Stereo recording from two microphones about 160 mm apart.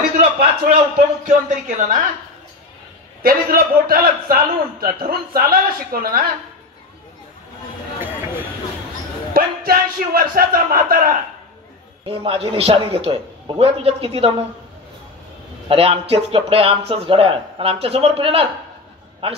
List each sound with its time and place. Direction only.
0.2 s a man's voice: 55° right (ahead or behind)
3.2 s a man's voice: 65° right (ahead or behind)
9.3 s music: 65° right (ahead or behind)
12.1 s a man's voice: 35° right (ahead or behind)
15.7 s a man's voice: 40° right (ahead or behind)